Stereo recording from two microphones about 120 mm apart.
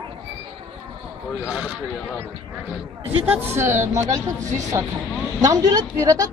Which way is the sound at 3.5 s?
20° right (ahead or behind).